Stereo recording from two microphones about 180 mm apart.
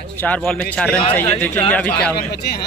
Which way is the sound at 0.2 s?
5° left (ahead or behind).